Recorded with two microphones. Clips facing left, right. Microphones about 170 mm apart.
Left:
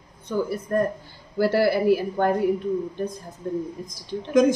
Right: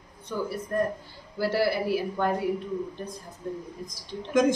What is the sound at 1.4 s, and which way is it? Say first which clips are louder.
Speech: left 5 dB; 55° left (ahead or behind).